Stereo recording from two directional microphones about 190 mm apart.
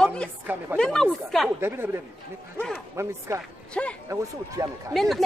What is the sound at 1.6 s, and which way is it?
Speech, 10° right (ahead or behind).